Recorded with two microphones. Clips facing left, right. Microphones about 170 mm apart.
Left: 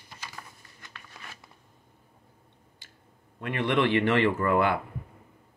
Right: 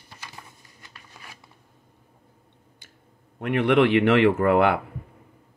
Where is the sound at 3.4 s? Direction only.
60° right (ahead or behind).